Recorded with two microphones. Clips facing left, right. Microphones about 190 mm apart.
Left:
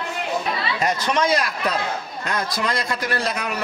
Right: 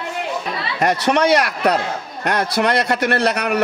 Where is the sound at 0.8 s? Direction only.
65° right (ahead or behind).